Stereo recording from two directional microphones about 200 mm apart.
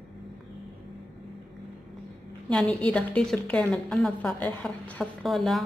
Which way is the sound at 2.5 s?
5° left (ahead or behind).